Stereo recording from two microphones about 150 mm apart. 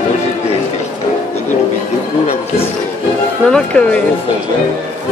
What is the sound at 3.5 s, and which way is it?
Speech, 5° left (ahead or behind).